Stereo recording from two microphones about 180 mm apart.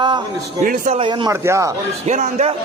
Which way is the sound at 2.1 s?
40° right (ahead or behind).